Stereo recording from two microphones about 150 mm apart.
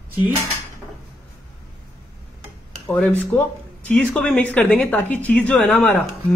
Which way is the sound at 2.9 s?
10° left (ahead or behind).